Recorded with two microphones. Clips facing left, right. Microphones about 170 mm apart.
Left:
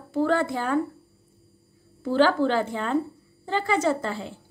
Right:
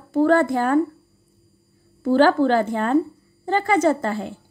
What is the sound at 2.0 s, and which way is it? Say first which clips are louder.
A woman's voice: right 5 dB; 50° right (ahead or behind).